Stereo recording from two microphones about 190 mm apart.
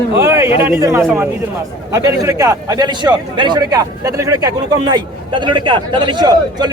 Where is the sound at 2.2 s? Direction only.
15° right (ahead or behind).